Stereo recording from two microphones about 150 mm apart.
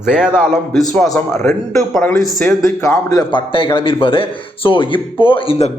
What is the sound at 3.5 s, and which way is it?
Speech, 35° left (ahead or behind).